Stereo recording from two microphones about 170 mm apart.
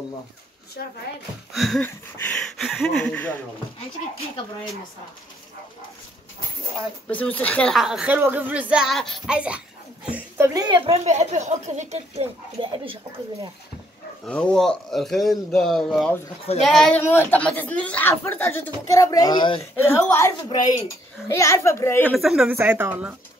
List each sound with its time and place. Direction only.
1.5 s speech: centre (ahead or behind)
7.1 s speech: 10° left (ahead or behind); by 10.8 s 20° right (ahead or behind)
10.9 s speech: 40° right (ahead or behind)
12.7 s speech: 30° right (ahead or behind)
14.2 s a woman's voice: 5° left (ahead or behind); by 19.6 s 25° left (ahead or behind)
19.6 s a woman's voice: 15° left (ahead or behind)
22.1 s speech: centre (ahead or behind)